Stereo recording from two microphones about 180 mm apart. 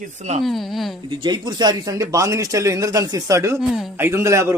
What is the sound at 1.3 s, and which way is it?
A man's voice, 25° right (ahead or behind).